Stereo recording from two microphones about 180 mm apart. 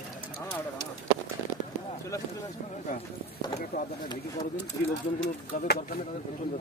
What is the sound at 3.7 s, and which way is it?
Speech, 60° left (ahead or behind).